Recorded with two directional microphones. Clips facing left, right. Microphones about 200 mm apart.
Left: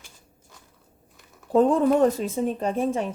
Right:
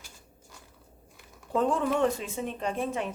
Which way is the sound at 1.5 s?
40° left (ahead or behind).